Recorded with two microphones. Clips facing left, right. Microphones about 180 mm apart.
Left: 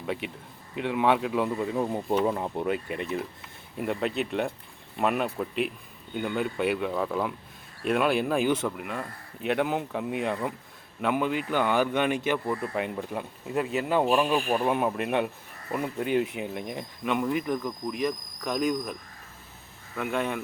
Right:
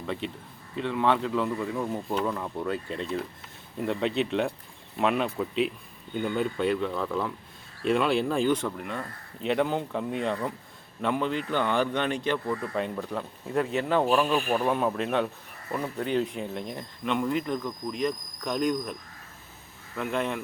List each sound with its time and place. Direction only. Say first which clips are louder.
0.8 s speech: left 1 dB; 15° left (ahead or behind)
20.0 s speech: even; 5° left (ahead or behind)